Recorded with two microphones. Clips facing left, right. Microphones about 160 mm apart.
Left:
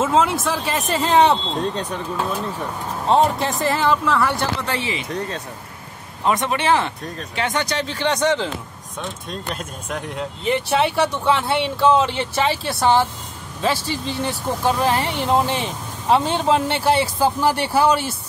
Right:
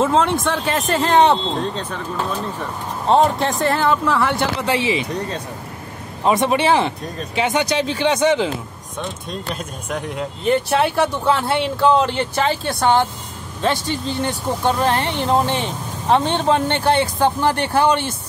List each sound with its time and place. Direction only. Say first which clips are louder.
0.0 s speech: right 1 dB; 5° left (ahead or behind)
3.1 s speech: right 2 dB; centre (ahead or behind)
4.6 s speech: right 6 dB; 20° right (ahead or behind)
6.3 s speech: right 3 dB; 15° right (ahead or behind)
9.6 s speech: right 2 dB; centre (ahead or behind)